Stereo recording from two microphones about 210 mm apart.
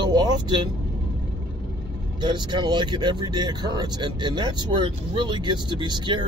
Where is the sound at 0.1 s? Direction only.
20° right (ahead or behind).